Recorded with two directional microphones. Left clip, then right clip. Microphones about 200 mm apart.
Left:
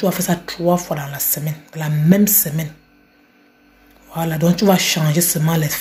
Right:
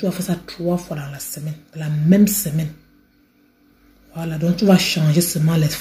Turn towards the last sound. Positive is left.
turn(degrees=-5)  # may be behind; listen again after turning